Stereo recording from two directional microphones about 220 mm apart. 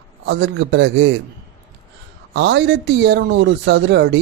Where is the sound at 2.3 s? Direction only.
55° right (ahead or behind).